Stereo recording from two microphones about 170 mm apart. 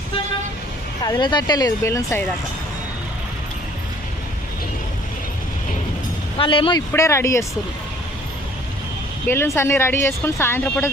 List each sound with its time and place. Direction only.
1.0 s speech: 25° left (ahead or behind)
6.3 s speech: 30° left (ahead or behind)
6.9 s speech: 15° left (ahead or behind)
9.2 s speech: 15° left (ahead or behind)